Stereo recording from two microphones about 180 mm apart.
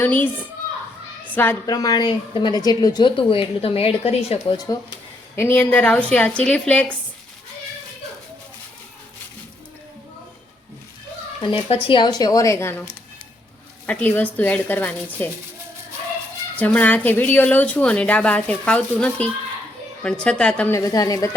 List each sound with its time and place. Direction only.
0.0 s a woman's voice: 10° left (ahead or behind)
1.4 s a woman's voice: 15° left (ahead or behind); by 4.5 s 35° left (ahead or behind)
4.5 s a woman's voice: 20° left (ahead or behind)
11.3 s a woman's voice: 30° left (ahead or behind); by 15.3 s 10° left (ahead or behind)
16.6 s a woman's voice: 10° left (ahead or behind)
20.7 s a woman's voice: 20° left (ahead or behind)